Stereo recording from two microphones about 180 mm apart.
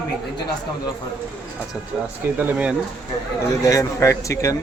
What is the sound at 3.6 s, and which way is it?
Speech, 15° left (ahead or behind).